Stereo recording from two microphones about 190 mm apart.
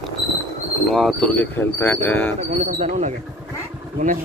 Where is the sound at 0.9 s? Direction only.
Centre (ahead or behind).